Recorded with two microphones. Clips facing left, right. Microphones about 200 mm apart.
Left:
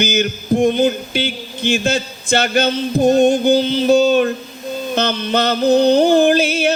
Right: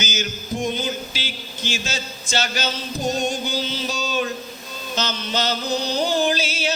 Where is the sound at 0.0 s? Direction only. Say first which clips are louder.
Left 10 dB; 60° left (ahead or behind).